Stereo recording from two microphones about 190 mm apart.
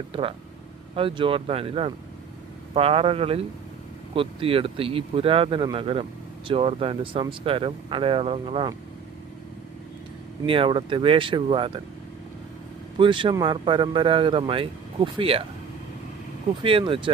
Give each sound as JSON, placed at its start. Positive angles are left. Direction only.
{"t": 0.1, "sound": "speech", "side_deg": -30}
{"t": 10.4, "sound": "speech", "side_deg": -25}
{"t": 13.0, "sound": "speech", "side_deg": -25}
{"t": 16.6, "sound": "speech", "side_deg": -25}